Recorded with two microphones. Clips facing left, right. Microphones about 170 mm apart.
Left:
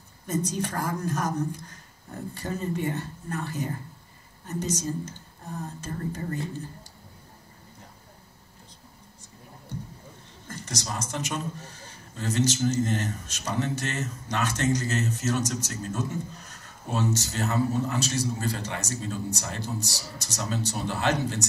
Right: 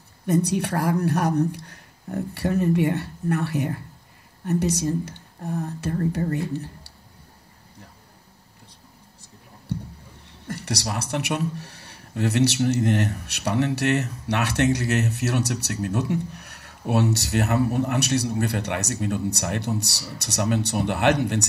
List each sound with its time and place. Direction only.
0.3 s speech: 65° right (ahead or behind)
10.4 s speech: 65° right (ahead or behind)